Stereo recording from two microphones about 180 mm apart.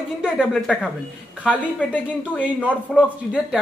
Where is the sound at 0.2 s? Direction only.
5° right (ahead or behind).